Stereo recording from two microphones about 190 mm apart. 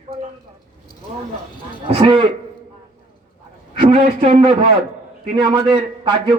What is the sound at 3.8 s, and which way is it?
A man's voice, 30° right (ahead or behind).